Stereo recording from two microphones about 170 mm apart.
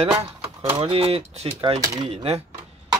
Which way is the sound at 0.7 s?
35° right (ahead or behind).